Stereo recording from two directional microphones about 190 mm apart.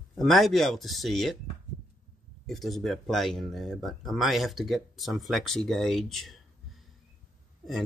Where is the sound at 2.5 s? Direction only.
Centre (ahead or behind).